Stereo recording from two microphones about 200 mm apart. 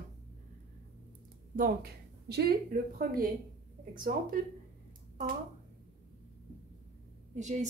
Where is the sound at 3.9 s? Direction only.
45° right (ahead or behind).